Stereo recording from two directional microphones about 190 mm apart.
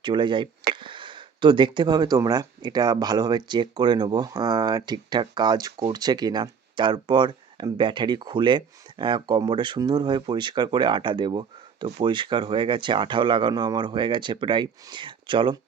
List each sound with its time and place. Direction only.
0.0 s speech: 25° right (ahead or behind)